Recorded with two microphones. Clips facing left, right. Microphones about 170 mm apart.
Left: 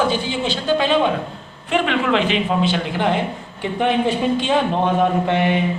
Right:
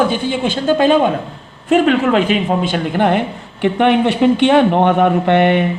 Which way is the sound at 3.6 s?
70° right (ahead or behind).